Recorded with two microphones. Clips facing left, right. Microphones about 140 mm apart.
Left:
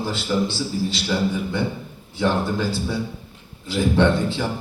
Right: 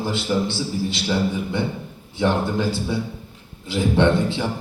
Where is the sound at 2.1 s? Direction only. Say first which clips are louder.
Right 1 dB; 20° right (ahead or behind).